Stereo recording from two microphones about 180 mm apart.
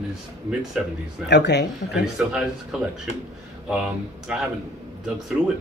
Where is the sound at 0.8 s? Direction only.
5° right (ahead or behind).